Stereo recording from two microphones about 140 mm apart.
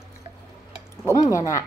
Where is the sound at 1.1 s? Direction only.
25° left (ahead or behind).